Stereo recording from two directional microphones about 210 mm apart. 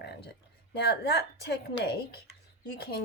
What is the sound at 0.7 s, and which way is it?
Speech, 50° left (ahead or behind).